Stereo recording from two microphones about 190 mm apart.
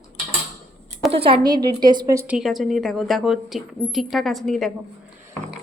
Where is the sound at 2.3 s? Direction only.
Centre (ahead or behind).